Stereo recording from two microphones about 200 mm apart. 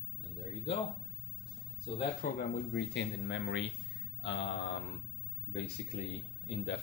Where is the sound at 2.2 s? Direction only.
50° left (ahead or behind).